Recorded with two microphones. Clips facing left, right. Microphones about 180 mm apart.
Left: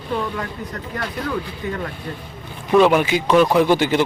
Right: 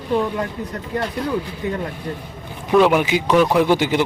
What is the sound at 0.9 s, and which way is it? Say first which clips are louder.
Speech: right 3 dB; 25° right (ahead or behind).